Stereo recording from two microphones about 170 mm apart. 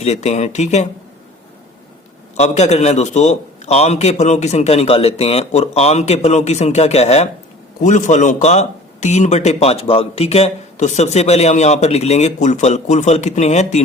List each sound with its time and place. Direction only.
0.0 s a man's voice: 40° left (ahead or behind)
2.3 s a man's voice: 40° left (ahead or behind)